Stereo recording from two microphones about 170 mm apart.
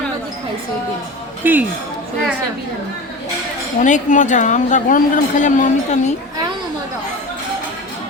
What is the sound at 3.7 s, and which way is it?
A woman's voice, 45° left (ahead or behind).